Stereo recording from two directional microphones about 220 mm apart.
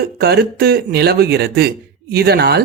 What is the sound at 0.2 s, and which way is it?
A man's voice, 45° right (ahead or behind).